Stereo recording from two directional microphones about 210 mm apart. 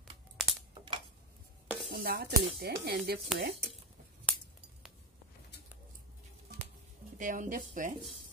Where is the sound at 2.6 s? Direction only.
50° right (ahead or behind).